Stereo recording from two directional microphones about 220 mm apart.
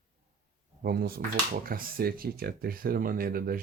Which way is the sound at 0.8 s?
45° right (ahead or behind).